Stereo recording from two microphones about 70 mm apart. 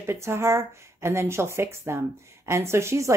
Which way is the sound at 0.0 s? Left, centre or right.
Right.